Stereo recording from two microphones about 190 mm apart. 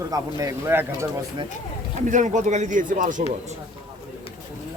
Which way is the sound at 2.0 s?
40° right (ahead or behind).